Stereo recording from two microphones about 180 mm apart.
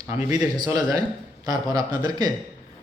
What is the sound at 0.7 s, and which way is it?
A man's voice, 20° right (ahead or behind).